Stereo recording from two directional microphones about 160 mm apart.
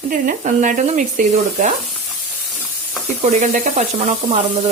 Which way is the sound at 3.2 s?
45° right (ahead or behind).